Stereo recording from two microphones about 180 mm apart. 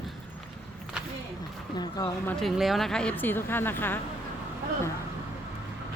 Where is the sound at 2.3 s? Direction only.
Centre (ahead or behind).